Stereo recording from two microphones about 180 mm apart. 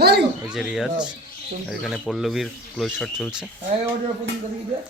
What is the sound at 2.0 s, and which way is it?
Speech, centre (ahead or behind).